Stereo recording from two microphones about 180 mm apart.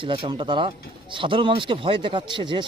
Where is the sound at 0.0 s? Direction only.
30° right (ahead or behind).